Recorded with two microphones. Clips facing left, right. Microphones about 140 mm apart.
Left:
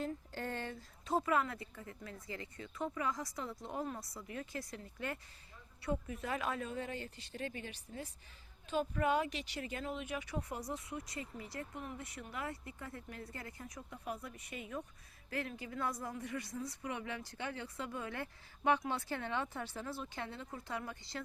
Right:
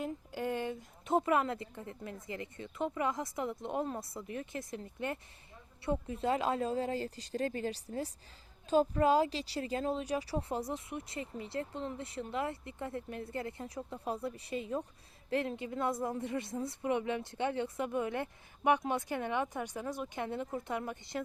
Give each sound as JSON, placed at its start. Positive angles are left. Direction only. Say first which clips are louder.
{"t": 0.0, "sound": "speech", "louder": "right 4 dB", "side_deg": -10}